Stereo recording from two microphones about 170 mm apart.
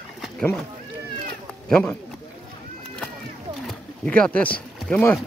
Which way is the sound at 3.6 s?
5° left (ahead or behind).